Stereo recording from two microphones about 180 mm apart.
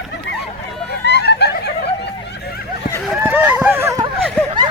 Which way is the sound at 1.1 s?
70° left (ahead or behind).